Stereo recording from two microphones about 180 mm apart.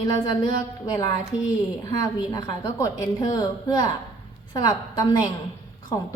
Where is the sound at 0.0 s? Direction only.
25° left (ahead or behind).